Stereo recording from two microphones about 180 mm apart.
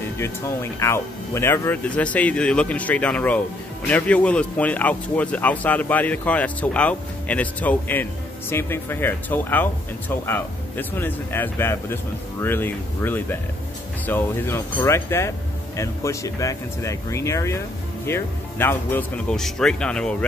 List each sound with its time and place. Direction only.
0.2 s speech: 15° left (ahead or behind)